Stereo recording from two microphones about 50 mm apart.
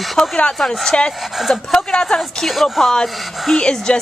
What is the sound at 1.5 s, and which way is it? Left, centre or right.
Speech, centre.